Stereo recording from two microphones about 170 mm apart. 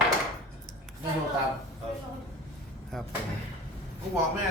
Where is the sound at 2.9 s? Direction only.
Centre (ahead or behind).